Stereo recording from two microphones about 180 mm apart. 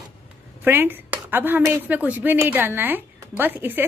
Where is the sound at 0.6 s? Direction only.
10° right (ahead or behind).